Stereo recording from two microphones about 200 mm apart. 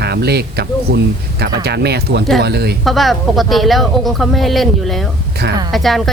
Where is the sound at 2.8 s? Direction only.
Centre (ahead or behind).